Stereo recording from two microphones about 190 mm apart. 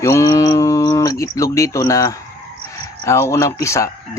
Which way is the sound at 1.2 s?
15° left (ahead or behind).